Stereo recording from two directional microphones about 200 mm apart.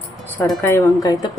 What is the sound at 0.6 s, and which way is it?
Speech, 15° left (ahead or behind).